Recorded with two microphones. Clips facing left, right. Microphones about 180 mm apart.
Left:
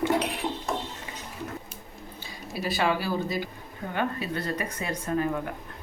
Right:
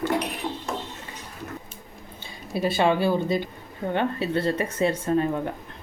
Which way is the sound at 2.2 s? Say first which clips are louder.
Right 8 dB; 25° right (ahead or behind).